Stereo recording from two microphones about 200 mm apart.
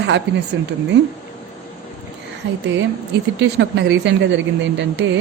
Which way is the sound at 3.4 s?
60° right (ahead or behind).